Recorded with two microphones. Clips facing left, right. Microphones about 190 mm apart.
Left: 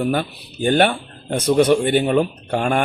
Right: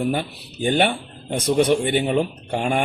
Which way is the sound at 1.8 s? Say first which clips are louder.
Left 3 dB; 50° left (ahead or behind).